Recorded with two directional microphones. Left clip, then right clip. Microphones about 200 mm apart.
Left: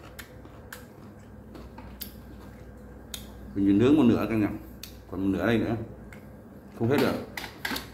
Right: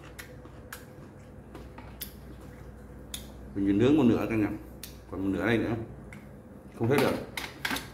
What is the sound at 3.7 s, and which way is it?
Speech, 25° left (ahead or behind).